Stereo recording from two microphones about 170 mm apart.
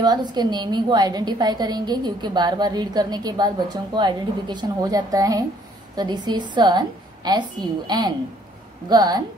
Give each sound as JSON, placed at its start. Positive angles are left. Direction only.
{"t": 0.0, "sound": "a woman's voice", "side_deg": -25}